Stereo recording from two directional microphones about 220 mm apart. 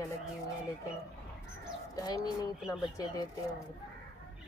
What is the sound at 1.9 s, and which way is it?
Speech, 20° left (ahead or behind).